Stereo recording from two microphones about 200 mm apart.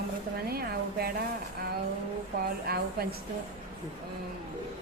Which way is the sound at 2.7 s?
50° right (ahead or behind).